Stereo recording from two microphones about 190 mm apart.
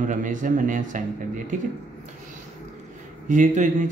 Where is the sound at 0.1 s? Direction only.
40° right (ahead or behind).